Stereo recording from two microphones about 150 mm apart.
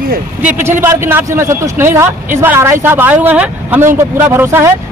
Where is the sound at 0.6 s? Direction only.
15° right (ahead or behind).